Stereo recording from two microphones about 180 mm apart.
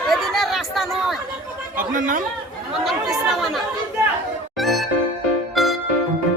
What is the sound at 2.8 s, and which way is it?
Speech, centre (ahead or behind).